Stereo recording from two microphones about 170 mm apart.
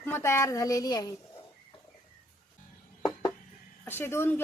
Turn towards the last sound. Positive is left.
turn(degrees=15)  # may be behind; listen again after turning